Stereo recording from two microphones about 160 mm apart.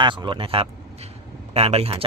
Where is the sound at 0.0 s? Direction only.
30° right (ahead or behind).